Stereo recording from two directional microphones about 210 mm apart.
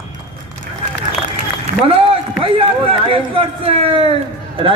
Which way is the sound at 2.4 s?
25° right (ahead or behind).